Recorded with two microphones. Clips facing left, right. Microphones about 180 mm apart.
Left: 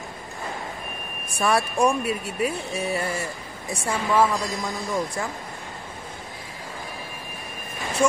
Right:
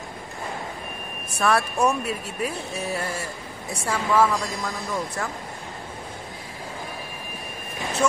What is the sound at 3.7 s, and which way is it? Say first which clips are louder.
Speech: even; 30° left (ahead or behind).